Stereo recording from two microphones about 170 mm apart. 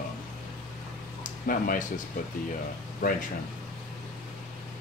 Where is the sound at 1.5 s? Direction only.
55° left (ahead or behind).